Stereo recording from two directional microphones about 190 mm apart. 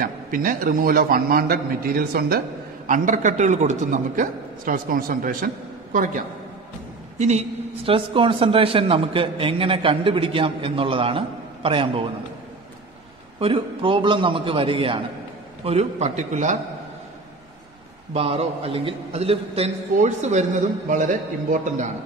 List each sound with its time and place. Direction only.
0.0 s a man's voice: 45° right (ahead or behind)
2.9 s a man's voice: 40° right (ahead or behind)
7.2 s a man's voice: 35° right (ahead or behind)
13.4 s a man's voice: 25° right (ahead or behind)
18.1 s a man's voice: 30° right (ahead or behind)